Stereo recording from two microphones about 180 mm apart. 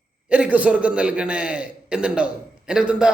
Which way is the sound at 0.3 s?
5° right (ahead or behind).